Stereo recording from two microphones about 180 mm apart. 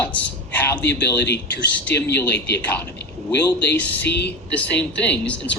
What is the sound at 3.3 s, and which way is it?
Speech, 70° left (ahead or behind).